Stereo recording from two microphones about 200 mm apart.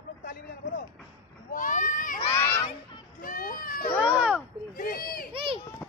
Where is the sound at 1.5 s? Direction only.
40° left (ahead or behind).